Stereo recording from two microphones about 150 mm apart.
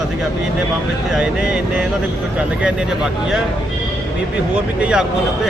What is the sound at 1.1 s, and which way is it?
Speech, 5° right (ahead or behind).